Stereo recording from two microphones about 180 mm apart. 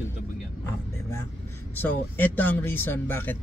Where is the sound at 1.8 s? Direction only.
10° left (ahead or behind).